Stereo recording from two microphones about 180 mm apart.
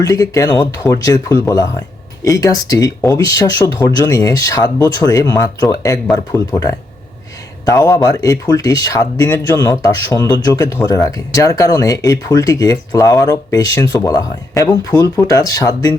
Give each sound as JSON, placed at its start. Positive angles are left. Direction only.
{"t": 0.0, "sound": "speech", "side_deg": 20}